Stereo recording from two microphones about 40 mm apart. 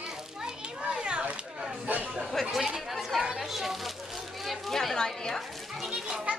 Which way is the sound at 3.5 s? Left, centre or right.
Centre.